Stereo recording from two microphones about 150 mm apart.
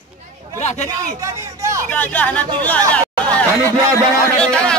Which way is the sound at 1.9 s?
10° left (ahead or behind).